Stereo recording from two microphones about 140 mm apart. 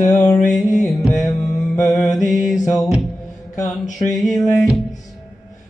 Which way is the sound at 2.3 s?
Centre (ahead or behind).